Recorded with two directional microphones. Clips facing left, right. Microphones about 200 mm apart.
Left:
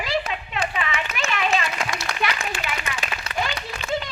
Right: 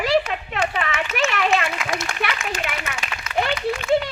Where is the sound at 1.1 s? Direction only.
65° right (ahead or behind).